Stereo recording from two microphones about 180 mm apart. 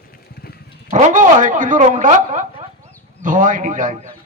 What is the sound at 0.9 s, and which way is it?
A man's voice, 45° right (ahead or behind).